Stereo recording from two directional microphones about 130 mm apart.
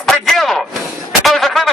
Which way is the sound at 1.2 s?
Centre (ahead or behind).